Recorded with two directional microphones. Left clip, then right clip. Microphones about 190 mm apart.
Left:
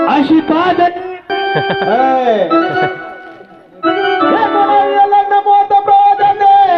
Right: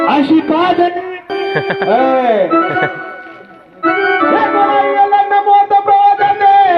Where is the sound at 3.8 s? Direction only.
35° left (ahead or behind).